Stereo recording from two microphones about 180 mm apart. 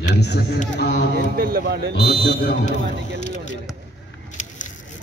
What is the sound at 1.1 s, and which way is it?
Speech, 55° right (ahead or behind).